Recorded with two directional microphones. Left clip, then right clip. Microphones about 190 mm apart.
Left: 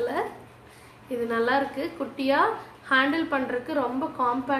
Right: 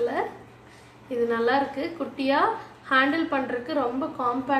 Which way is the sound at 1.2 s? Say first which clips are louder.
Even; 15° left (ahead or behind).